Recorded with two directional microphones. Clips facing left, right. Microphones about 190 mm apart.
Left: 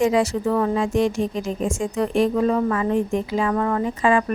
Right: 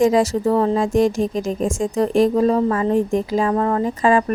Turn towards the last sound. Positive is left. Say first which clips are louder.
# right 3 dB
turn(degrees=-40)  # may be behind; listen again after turning